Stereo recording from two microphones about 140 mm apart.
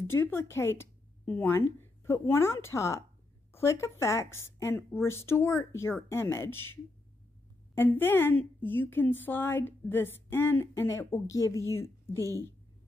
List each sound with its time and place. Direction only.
0.0 s a woman's voice: 15° left (ahead or behind)
12.2 s a woman's voice: 25° right (ahead or behind)